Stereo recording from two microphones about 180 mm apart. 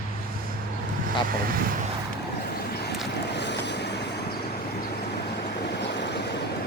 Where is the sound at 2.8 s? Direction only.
70° left (ahead or behind).